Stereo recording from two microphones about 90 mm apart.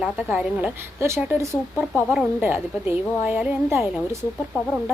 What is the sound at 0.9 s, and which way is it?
Speech, 30° right (ahead or behind).